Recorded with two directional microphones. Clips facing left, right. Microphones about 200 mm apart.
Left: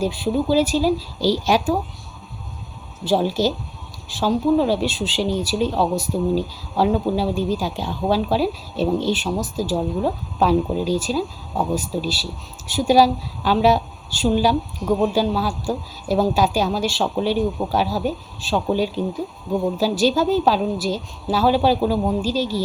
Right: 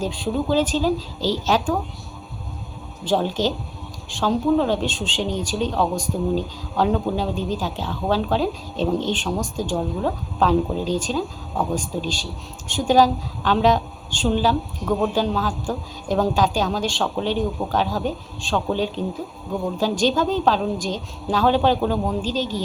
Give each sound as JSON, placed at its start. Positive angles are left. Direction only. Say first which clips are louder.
{"t": 0.0, "sound": "speech", "louder": "left 3 dB", "side_deg": 10}
{"t": 3.0, "sound": "speech", "louder": "left 2 dB", "side_deg": 10}